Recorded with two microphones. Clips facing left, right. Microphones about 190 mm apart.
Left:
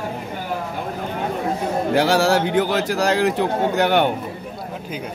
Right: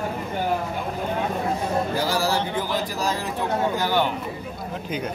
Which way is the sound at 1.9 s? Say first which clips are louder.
Left 7 dB; 75° left (ahead or behind).